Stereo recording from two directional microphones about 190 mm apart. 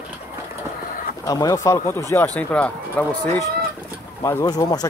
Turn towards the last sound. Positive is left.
turn(degrees=20)  # may be behind; listen again after turning